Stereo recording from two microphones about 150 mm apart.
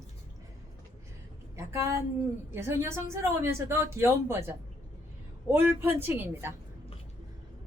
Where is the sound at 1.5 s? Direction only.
20° right (ahead or behind).